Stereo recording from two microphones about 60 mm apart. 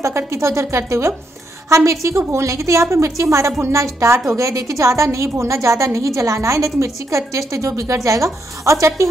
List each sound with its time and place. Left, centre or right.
0.3 s a woman's voice: right
4.4 s a woman's voice: right